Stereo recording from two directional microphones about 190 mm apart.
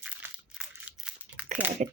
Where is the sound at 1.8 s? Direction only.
40° right (ahead or behind).